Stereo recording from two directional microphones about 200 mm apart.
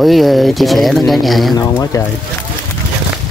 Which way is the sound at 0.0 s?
Centre (ahead or behind).